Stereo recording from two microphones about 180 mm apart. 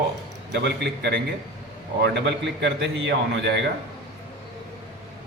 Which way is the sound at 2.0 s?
75° right (ahead or behind).